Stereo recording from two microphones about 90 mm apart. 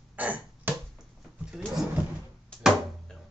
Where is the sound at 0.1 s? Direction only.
15° right (ahead or behind).